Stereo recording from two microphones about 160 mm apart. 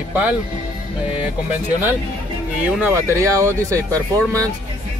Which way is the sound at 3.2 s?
20° right (ahead or behind).